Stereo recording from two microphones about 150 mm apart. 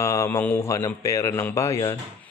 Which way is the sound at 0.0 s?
20° left (ahead or behind).